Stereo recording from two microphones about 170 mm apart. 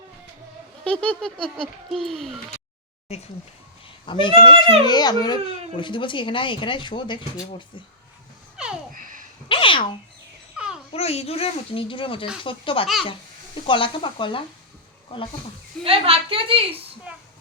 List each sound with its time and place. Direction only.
0.9 s speech: 5° left (ahead or behind)
4.0 s speech: 30° left (ahead or behind)
8.6 s babbling: 5° right (ahead or behind)
9.0 s a sound: 50° right (ahead or behind)
9.5 s speech: 30° left (ahead or behind)
10.6 s a sound: 5° right (ahead or behind)
10.9 s speech: 35° left (ahead or behind)
15.8 s a woman's voice: 35° right (ahead or behind)